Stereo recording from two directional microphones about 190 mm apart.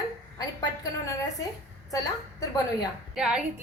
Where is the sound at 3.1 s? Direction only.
5° right (ahead or behind).